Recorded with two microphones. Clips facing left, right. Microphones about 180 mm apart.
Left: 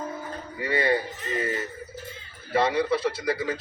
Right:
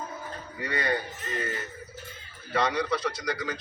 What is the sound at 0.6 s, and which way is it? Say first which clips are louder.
Speech: left 5 dB; 30° left (ahead or behind).